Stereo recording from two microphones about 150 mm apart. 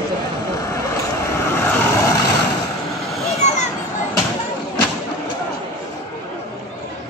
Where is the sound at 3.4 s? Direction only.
50° left (ahead or behind).